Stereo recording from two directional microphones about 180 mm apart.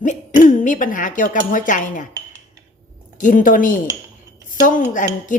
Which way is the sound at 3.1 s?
45° left (ahead or behind).